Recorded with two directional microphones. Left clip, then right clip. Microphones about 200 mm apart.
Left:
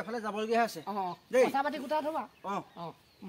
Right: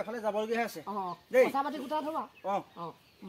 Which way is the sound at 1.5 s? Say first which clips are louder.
Left 1 dB; 15° left (ahead or behind).